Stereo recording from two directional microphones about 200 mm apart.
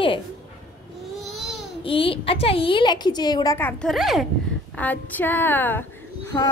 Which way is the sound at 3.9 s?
Centre (ahead or behind).